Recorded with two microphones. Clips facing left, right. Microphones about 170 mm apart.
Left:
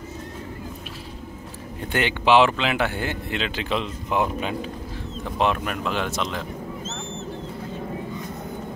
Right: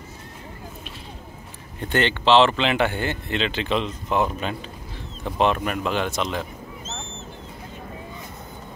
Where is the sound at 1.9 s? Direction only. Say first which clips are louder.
Right 1 dB; 10° left (ahead or behind).